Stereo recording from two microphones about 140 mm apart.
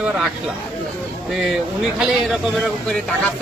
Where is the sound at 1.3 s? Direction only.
Centre (ahead or behind).